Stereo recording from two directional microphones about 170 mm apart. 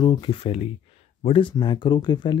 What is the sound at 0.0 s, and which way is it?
Speech, 25° left (ahead or behind).